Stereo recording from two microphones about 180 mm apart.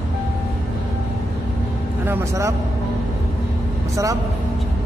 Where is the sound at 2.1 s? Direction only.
15° right (ahead or behind).